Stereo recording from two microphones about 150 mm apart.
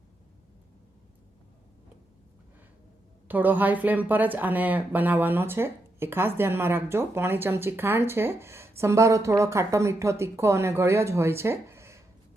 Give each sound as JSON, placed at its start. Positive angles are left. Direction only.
{"t": 3.2, "sound": "a woman's voice", "side_deg": -10}